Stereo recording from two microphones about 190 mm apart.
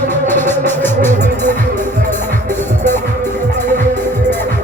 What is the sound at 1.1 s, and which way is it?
Music, 40° right (ahead or behind).